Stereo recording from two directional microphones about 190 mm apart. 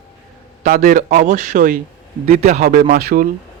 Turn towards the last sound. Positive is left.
turn(degrees=-50)  # may be behind; listen again after turning